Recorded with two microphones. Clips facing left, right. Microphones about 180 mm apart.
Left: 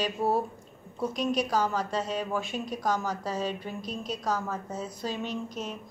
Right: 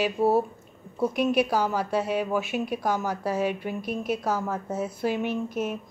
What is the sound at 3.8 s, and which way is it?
Speech, 55° right (ahead or behind).